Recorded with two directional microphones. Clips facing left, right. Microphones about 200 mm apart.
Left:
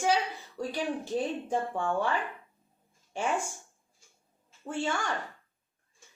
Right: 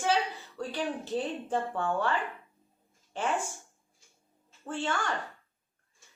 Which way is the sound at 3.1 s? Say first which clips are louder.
Even; 10° left (ahead or behind).